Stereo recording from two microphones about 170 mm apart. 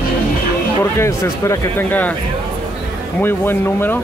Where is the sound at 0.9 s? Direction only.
15° left (ahead or behind).